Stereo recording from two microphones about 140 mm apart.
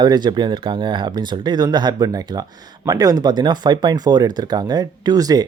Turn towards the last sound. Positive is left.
turn(degrees=-25)  # may be behind; listen again after turning